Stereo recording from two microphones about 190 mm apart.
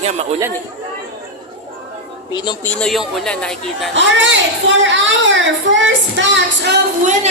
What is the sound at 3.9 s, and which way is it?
A woman's voice, 75° right (ahead or behind).